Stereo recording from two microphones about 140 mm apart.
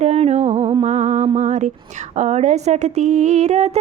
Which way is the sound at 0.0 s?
50° right (ahead or behind).